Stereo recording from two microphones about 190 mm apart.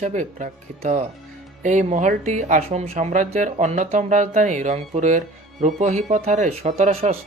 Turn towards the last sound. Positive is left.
turn(degrees=-30)  # may be behind; listen again after turning